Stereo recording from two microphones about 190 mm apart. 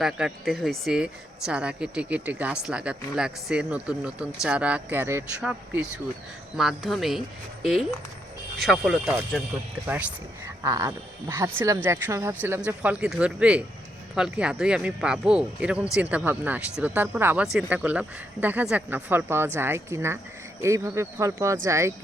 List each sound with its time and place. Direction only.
0.0 s speech: centre (ahead or behind)
10.4 s speech: 15° right (ahead or behind)